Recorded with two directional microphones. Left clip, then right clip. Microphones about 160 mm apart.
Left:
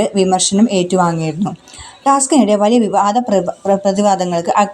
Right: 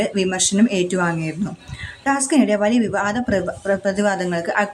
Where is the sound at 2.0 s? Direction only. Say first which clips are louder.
Left 6 dB; 15° left (ahead or behind).